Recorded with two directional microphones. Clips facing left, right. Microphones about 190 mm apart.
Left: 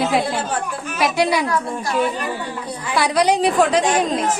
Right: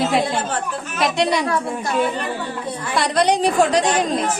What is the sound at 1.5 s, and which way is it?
Speech, 25° right (ahead or behind).